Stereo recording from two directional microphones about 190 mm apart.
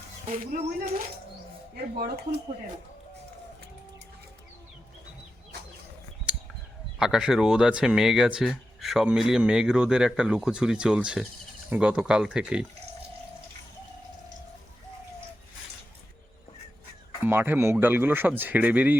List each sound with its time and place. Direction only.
0.3 s speech: 45° right (ahead or behind)
7.0 s speech: 5° right (ahead or behind)
17.2 s speech: 10° right (ahead or behind)